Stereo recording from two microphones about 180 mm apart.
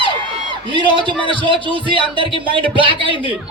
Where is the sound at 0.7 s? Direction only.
25° right (ahead or behind).